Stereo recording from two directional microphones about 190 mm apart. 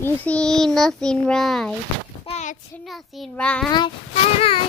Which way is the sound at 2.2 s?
35° left (ahead or behind).